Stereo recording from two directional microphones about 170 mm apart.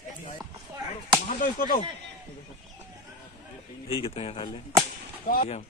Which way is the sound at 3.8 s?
35° left (ahead or behind).